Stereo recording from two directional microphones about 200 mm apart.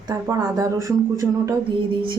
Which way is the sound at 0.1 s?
15° right (ahead or behind).